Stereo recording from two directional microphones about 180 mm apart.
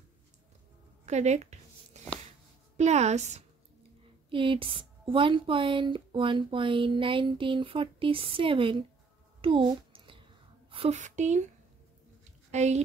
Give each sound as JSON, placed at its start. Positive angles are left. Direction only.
{"t": 1.0, "sound": "a woman's voice", "side_deg": -40}
{"t": 2.8, "sound": "a woman's voice", "side_deg": -40}
{"t": 4.3, "sound": "speech", "side_deg": -30}
{"t": 9.4, "sound": "a sound", "side_deg": -30}
{"t": 10.7, "sound": "speech", "side_deg": -35}
{"t": 12.4, "sound": "a woman's voice", "side_deg": -40}